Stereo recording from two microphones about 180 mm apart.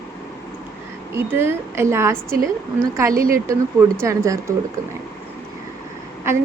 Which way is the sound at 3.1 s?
55° right (ahead or behind).